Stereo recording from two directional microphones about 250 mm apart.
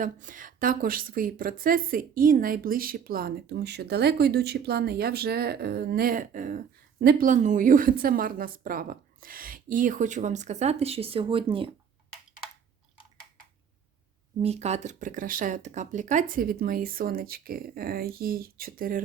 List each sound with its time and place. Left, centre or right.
0.0 s a woman's voice: right
14.4 s a woman's voice: right